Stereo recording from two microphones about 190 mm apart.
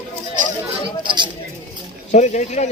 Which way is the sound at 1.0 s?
25° right (ahead or behind).